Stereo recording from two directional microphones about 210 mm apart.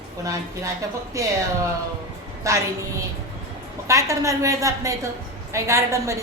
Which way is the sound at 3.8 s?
15° right (ahead or behind).